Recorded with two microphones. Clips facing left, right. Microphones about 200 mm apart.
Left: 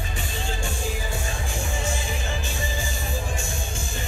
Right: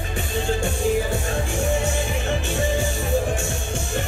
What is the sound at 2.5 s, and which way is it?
Music, 65° right (ahead or behind).